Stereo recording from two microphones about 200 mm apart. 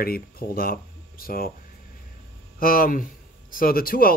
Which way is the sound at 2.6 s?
45° left (ahead or behind).